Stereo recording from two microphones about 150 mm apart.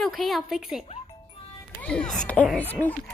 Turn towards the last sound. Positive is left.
turn(degrees=10)  # may be behind; listen again after turning